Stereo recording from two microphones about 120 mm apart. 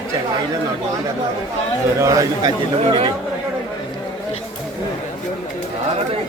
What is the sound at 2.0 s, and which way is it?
Speech, 30° right (ahead or behind).